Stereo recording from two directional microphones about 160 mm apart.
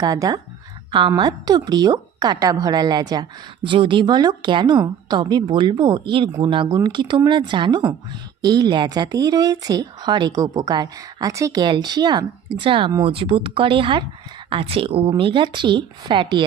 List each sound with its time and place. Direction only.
0.0 s a woman's voice: 25° right (ahead or behind)